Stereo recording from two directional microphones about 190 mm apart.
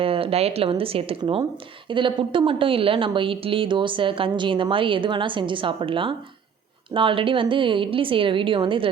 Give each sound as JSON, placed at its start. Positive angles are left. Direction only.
{"t": 0.0, "sound": "a woman's voice", "side_deg": -30}